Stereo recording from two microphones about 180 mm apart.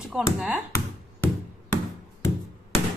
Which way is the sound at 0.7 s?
15° left (ahead or behind).